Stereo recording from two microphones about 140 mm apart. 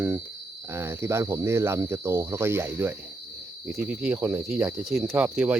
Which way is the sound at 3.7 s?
10° right (ahead or behind).